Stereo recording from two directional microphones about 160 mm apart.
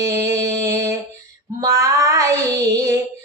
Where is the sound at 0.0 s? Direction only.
20° right (ahead or behind).